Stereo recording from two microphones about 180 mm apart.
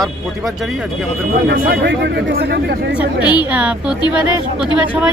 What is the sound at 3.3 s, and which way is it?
Speech, 5° right (ahead or behind).